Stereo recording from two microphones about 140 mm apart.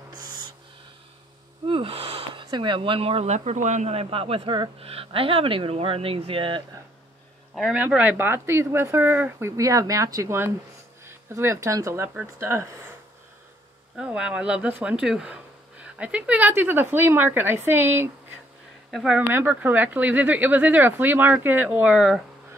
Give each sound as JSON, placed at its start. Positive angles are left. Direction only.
{"t": 0.2, "sound": "owl", "side_deg": -30}
{"t": 1.7, "sound": "speech", "side_deg": -40}
{"t": 7.7, "sound": "speech", "side_deg": -10}
{"t": 9.6, "sound": "speech", "side_deg": -25}
{"t": 13.9, "sound": "speech", "side_deg": -5}
{"t": 18.9, "sound": "speech", "side_deg": 0}